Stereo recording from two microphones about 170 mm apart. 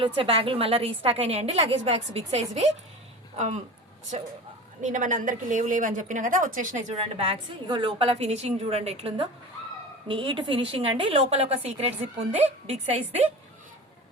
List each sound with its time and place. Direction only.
0.2 s a woman's voice: 35° right (ahead or behind)
4.8 s a woman's voice: 45° right (ahead or behind)
7.2 s a woman's voice: 30° right (ahead or behind)